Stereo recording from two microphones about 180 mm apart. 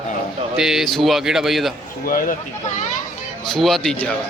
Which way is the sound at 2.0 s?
50° left (ahead or behind).